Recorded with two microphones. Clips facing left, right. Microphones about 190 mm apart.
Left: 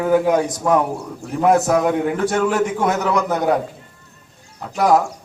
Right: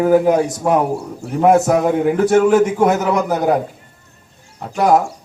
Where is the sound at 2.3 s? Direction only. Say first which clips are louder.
Right 6 dB; 40° right (ahead or behind).